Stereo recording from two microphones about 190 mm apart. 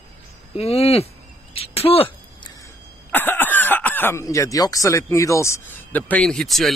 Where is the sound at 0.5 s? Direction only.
30° left (ahead or behind).